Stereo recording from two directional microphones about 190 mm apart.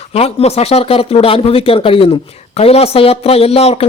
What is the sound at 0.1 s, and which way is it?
A man's voice, 30° left (ahead or behind).